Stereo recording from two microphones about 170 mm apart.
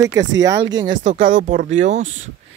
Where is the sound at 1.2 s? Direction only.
50° right (ahead or behind).